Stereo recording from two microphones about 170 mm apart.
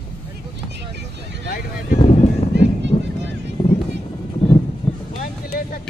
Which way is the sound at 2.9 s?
30° left (ahead or behind).